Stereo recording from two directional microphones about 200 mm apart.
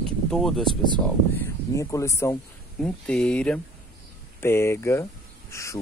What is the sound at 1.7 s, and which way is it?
Speech, 15° left (ahead or behind).